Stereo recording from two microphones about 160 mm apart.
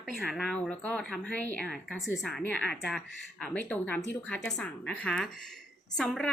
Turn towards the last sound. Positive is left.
turn(degrees=5)  # may be behind; listen again after turning